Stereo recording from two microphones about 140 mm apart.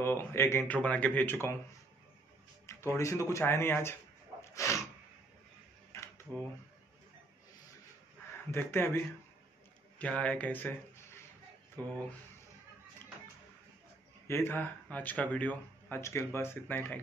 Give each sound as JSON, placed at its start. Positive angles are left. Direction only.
{"t": 0.0, "sound": "speech", "side_deg": 15}
{"t": 2.6, "sound": "music", "side_deg": 20}
{"t": 3.0, "sound": "speech", "side_deg": 20}
{"t": 4.6, "sound": "snort", "side_deg": 20}
{"t": 8.5, "sound": "speech", "side_deg": 15}
{"t": 14.2, "sound": "speech", "side_deg": 15}